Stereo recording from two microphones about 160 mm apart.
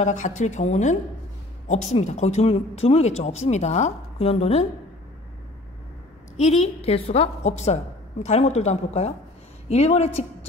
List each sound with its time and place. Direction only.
0.0 s speech: 50° left (ahead or behind)
6.3 s speech: 45° left (ahead or behind)